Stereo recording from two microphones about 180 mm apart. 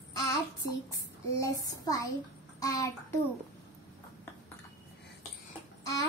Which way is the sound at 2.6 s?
20° left (ahead or behind).